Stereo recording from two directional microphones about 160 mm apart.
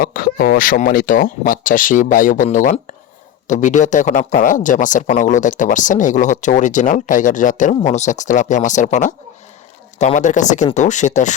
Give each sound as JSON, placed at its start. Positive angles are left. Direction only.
{"t": 0.0, "sound": "speech", "side_deg": 65}